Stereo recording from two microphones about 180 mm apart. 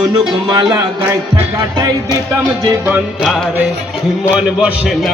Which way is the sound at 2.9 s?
5° right (ahead or behind).